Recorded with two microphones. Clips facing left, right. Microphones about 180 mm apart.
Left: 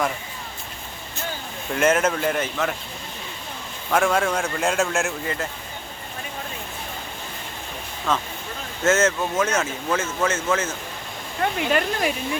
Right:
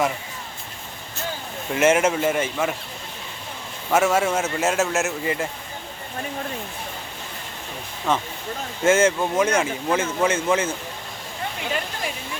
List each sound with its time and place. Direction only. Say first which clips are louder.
1.7 s speech: right 2 dB; 10° right (ahead or behind)
3.9 s speech: right 1 dB; 5° right (ahead or behind)
8.8 s speech: right 2 dB; 10° right (ahead or behind)
11.3 s speech: left 6 dB; 65° left (ahead or behind)